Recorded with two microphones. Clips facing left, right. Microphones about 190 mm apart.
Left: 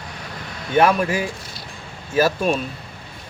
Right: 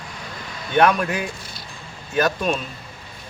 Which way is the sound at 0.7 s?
5° left (ahead or behind).